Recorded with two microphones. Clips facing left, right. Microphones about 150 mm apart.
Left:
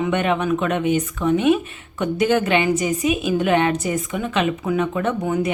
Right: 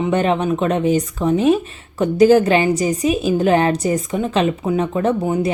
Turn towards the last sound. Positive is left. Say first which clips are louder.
# right 3 dB
turn(degrees=-30)  # may be behind; listen again after turning